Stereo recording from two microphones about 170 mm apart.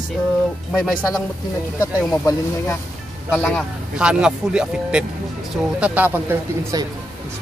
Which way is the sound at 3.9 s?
5° right (ahead or behind).